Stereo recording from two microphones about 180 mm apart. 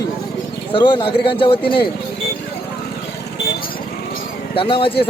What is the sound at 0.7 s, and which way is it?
Speech, 25° left (ahead or behind).